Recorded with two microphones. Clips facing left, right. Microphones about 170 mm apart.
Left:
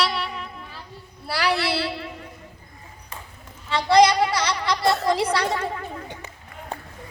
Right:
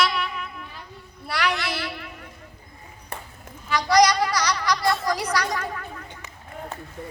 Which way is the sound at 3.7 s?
25° left (ahead or behind).